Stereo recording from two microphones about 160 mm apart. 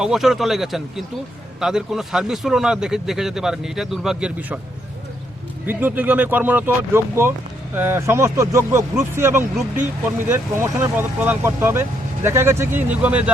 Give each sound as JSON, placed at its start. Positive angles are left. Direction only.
{"t": 0.0, "sound": "speech", "side_deg": 0}
{"t": 5.6, "sound": "speech", "side_deg": -10}